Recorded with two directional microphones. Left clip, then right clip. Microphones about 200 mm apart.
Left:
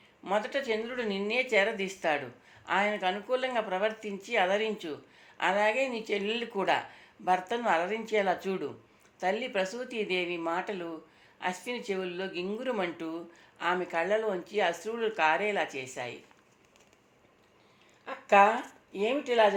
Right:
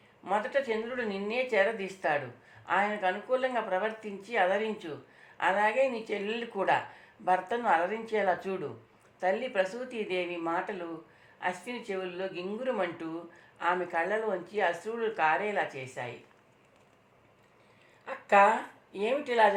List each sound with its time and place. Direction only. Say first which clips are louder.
0.3 s speech: right 1 dB; 45° left (ahead or behind)
18.0 s a sound: left 1 dB; 35° left (ahead or behind)
18.9 s speech: even; 35° left (ahead or behind)